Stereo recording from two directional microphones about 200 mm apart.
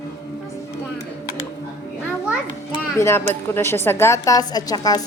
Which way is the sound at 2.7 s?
15° left (ahead or behind).